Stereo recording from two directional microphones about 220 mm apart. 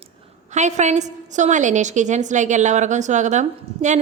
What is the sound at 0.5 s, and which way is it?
A woman's voice, 30° right (ahead or behind).